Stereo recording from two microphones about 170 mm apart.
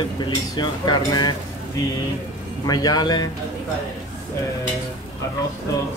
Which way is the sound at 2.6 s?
25° left (ahead or behind).